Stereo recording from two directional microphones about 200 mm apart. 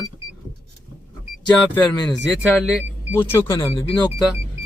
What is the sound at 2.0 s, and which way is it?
Speech, 5° left (ahead or behind).